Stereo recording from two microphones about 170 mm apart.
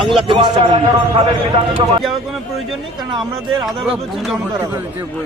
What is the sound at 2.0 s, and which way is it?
A man's voice, centre (ahead or behind).